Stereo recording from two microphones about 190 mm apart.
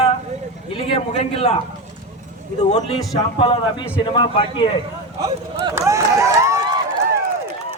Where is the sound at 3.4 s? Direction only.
25° left (ahead or behind).